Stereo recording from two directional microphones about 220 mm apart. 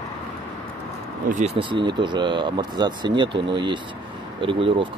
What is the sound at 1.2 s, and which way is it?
Speech, 30° right (ahead or behind).